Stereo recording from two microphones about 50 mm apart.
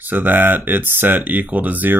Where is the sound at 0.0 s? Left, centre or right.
Right.